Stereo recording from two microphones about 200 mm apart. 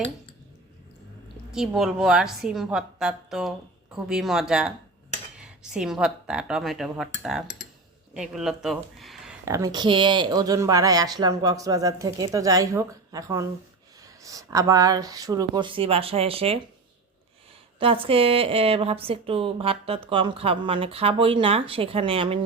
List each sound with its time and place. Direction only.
1.5 s a woman's voice: 5° right (ahead or behind)
9.5 s speech: 15° right (ahead or behind)
17.7 s a woman's voice: 25° right (ahead or behind)